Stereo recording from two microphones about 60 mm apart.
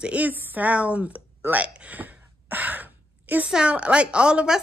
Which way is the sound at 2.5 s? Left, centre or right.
Right.